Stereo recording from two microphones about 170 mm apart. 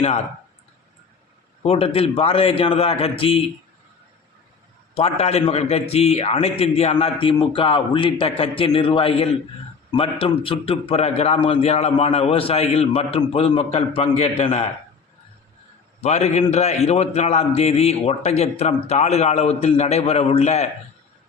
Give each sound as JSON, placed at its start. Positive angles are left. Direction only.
{"t": 1.6, "sound": "a man's voice", "side_deg": 35}
{"t": 4.9, "sound": "a man's voice", "side_deg": 35}
{"t": 16.0, "sound": "a man's voice", "side_deg": 40}